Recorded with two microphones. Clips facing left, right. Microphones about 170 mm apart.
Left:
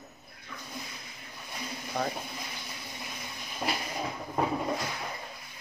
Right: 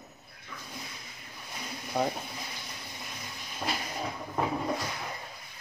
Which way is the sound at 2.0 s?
15° right (ahead or behind).